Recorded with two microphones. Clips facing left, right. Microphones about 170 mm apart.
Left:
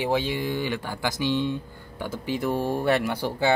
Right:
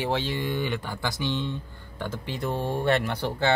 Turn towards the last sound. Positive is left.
turn(degrees=10)  # may be behind; listen again after turning